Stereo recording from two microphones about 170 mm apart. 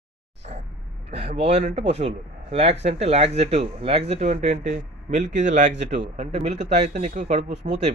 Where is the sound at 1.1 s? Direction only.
40° right (ahead or behind).